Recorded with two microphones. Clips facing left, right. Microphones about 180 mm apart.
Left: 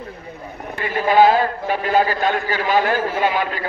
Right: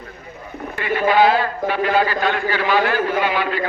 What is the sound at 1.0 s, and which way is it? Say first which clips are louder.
A man's voice: left 2 dB; 45° left (ahead or behind).